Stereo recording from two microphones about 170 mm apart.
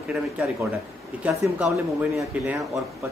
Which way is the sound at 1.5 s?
10° right (ahead or behind).